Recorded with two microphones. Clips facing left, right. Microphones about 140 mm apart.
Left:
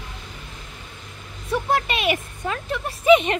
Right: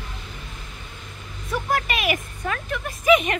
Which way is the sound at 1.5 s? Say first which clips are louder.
Left 2 dB; 30° left (ahead or behind).